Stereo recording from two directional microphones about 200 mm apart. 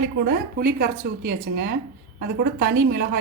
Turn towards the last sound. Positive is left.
turn(degrees=-55)  # may be behind; listen again after turning